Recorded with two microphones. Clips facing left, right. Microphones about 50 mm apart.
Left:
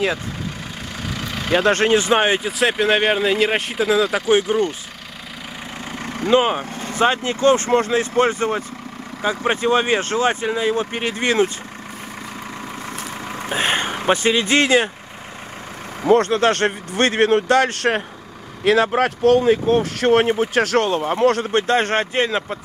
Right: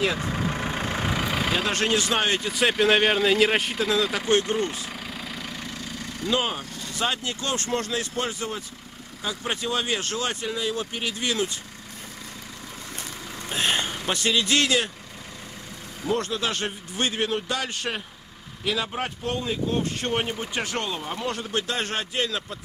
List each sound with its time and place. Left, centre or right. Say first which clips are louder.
0.4 s vehicle: right 3 dB; right
1.9 s speech: left 7 dB; left
2.6 s speech: left 2 dB; centre
5.9 s vehicle: left 10 dB; left
6.4 s speech: left 9 dB; left
13.6 s speech: left 4 dB; left
16.1 s a man's voice: left 11 dB; left
21.0 s a man's voice: left 13 dB; left
21.5 s speech: left 10 dB; left